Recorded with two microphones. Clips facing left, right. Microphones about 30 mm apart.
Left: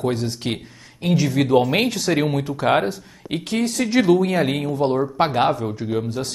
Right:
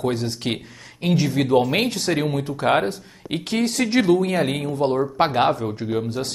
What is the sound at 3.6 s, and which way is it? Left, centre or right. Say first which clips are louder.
Speech: right 1 dB; right.